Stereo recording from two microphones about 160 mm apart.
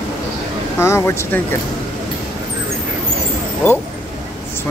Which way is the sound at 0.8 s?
15° left (ahead or behind).